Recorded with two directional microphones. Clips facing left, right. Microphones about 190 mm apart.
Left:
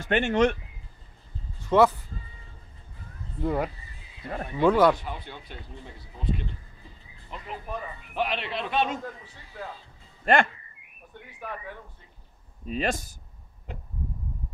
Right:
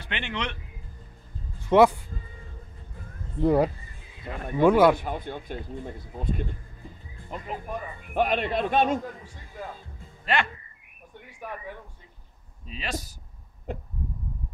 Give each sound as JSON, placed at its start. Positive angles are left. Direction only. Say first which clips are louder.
{"t": 0.0, "sound": "speech", "louder": "left 11 dB", "side_deg": 45}
{"t": 1.7, "sound": "speech", "louder": "right 2 dB", "side_deg": -15}
{"t": 3.3, "sound": "speech", "louder": "right 6 dB", "side_deg": -30}
{"t": 4.6, "sound": "speech", "louder": "right 2 dB", "side_deg": -10}
{"t": 4.9, "sound": "speech", "louder": "right 6 dB", "side_deg": -50}
{"t": 10.2, "sound": "speech", "louder": "left 5 dB", "side_deg": 50}
{"t": 11.2, "sound": "a sound", "louder": "even", "side_deg": -10}
{"t": 12.6, "sound": "speech", "louder": "left 6 dB", "side_deg": 50}
{"t": 13.7, "sound": "speech", "louder": "right 7 dB", "side_deg": -50}